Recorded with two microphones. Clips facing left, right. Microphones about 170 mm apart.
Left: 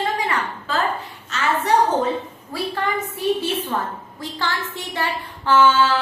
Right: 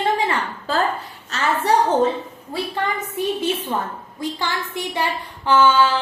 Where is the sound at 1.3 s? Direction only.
40° right (ahead or behind).